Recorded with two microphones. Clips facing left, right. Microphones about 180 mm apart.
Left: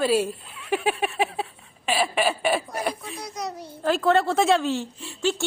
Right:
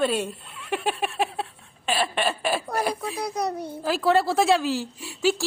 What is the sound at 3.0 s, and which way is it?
Speech, 60° right (ahead or behind).